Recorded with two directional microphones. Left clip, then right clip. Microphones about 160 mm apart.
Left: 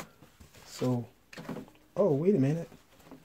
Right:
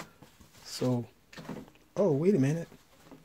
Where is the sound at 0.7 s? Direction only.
10° right (ahead or behind).